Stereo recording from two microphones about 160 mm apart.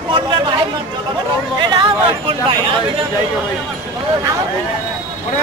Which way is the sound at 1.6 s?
30° right (ahead or behind).